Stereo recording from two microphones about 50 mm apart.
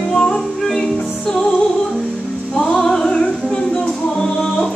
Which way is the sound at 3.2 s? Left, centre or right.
Centre.